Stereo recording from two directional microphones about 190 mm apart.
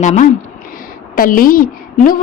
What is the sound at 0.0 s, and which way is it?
A woman's voice, 40° left (ahead or behind).